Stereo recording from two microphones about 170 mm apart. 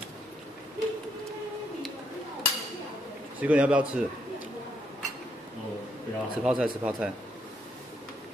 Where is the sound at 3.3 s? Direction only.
10° right (ahead or behind).